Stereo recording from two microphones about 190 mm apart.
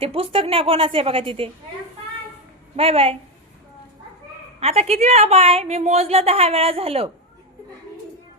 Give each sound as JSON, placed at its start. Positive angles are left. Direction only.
{"t": 0.0, "sound": "a woman's voice", "side_deg": -30}
{"t": 2.7, "sound": "a woman's voice", "side_deg": -30}
{"t": 4.6, "sound": "a woman's voice", "side_deg": -35}